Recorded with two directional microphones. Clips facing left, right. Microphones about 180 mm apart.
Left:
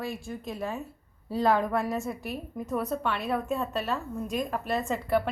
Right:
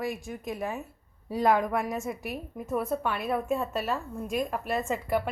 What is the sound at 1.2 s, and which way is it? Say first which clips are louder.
Speech: even; 15° right (ahead or behind).